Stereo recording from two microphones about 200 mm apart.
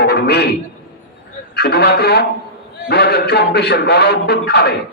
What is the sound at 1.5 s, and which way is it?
A man's voice, 55° left (ahead or behind).